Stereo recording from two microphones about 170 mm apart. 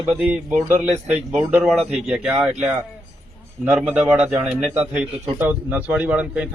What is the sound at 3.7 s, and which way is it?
A man's voice, 10° right (ahead or behind).